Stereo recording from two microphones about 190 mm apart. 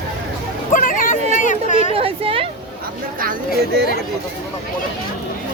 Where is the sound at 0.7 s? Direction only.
45° left (ahead or behind).